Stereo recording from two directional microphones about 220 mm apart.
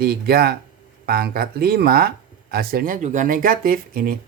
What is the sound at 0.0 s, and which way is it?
Speech, 45° right (ahead or behind).